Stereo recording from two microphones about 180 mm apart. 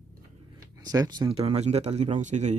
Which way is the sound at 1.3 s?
35° right (ahead or behind).